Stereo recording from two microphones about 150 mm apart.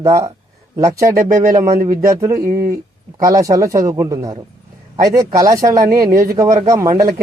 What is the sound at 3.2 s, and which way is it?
Speech, 25° right (ahead or behind).